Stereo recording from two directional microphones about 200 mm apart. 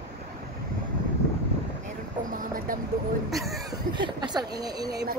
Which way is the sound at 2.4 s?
45° right (ahead or behind).